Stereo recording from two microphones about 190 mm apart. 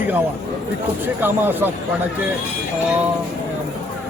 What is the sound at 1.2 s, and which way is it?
Speech, 10° right (ahead or behind).